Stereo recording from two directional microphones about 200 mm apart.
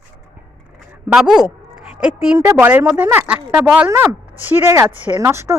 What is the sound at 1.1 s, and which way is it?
A woman's voice, 5° right (ahead or behind).